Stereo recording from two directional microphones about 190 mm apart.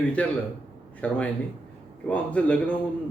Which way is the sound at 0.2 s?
5° left (ahead or behind).